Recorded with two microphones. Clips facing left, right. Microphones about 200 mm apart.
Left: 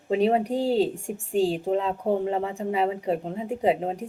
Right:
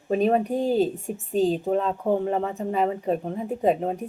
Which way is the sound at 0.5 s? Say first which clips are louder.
Right 1 dB; 75° left (ahead or behind).